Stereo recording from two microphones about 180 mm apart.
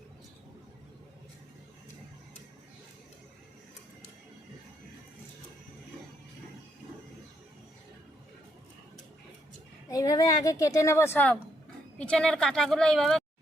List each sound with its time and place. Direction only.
9.9 s a woman's voice: 20° left (ahead or behind); by 13.2 s centre (ahead or behind)